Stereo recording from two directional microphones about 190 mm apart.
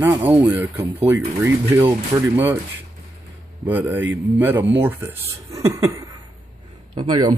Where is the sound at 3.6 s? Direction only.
10° right (ahead or behind).